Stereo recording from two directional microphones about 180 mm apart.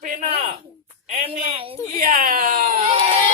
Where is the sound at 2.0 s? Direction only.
45° right (ahead or behind).